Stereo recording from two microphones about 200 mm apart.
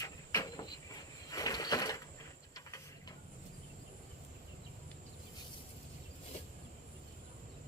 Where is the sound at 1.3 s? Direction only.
20° left (ahead or behind).